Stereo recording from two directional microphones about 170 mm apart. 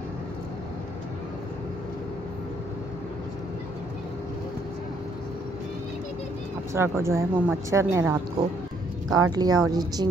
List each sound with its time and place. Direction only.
6.7 s speech: 15° right (ahead or behind)